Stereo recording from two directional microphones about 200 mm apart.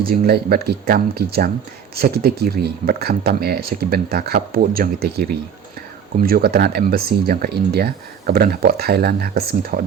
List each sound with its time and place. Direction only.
0.0 s speech: 50° right (ahead or behind)